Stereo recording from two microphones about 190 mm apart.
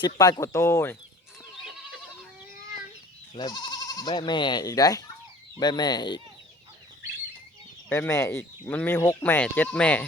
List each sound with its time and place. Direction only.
0.0 s speech: 20° left (ahead or behind)
3.3 s speech: 20° left (ahead or behind)
7.9 s speech: 10° left (ahead or behind)